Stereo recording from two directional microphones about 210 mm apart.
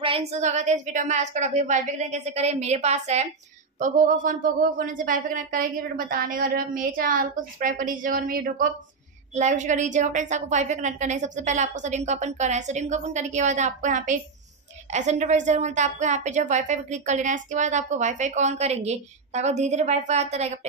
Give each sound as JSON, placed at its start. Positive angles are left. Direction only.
{"t": 0.0, "sound": "a woman's voice", "side_deg": -30}